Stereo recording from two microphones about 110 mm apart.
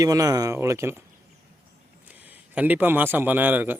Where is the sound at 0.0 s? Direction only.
35° right (ahead or behind).